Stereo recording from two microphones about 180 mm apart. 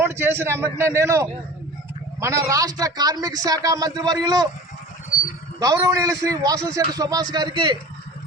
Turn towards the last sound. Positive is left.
turn(degrees=-25)  # may be behind; listen again after turning